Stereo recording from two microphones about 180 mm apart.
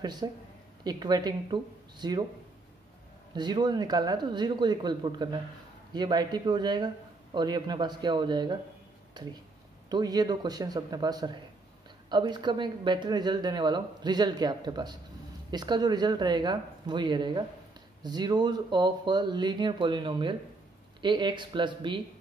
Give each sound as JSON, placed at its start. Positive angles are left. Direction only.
{"t": 0.0, "sound": "speech", "side_deg": -25}
{"t": 3.3, "sound": "speech", "side_deg": -25}